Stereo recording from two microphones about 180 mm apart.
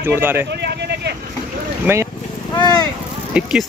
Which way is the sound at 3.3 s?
5° right (ahead or behind).